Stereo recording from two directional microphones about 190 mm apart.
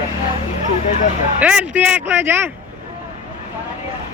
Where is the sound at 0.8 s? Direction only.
40° left (ahead or behind).